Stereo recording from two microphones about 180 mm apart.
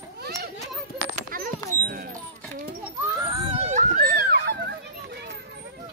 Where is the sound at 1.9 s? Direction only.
55° right (ahead or behind).